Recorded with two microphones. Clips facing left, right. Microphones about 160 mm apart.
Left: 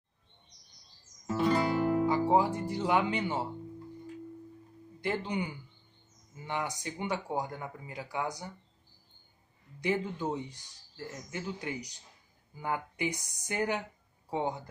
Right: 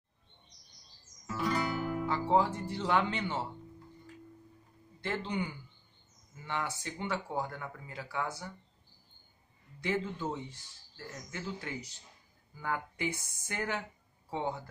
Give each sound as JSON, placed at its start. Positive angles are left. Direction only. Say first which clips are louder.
{"t": 1.2, "sound": "guitar", "louder": "left 5 dB", "side_deg": 25}
{"t": 2.0, "sound": "speech", "louder": "right 2 dB", "side_deg": 15}
{"t": 5.0, "sound": "speech", "louder": "left 2 dB", "side_deg": 15}
{"t": 9.8, "sound": "speech", "louder": "left 2 dB", "side_deg": 15}